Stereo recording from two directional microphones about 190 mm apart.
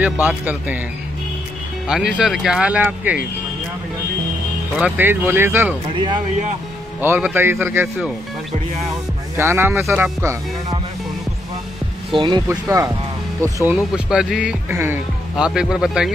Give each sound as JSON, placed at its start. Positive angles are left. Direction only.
{"t": 0.0, "sound": "speech", "side_deg": -10}
{"t": 1.9, "sound": "speech", "side_deg": -5}
{"t": 4.7, "sound": "speech", "side_deg": -10}
{"t": 7.0, "sound": "speech", "side_deg": -10}
{"t": 9.4, "sound": "speech", "side_deg": -10}
{"t": 12.1, "sound": "speech", "side_deg": -25}
{"t": 12.4, "sound": "speech", "side_deg": -15}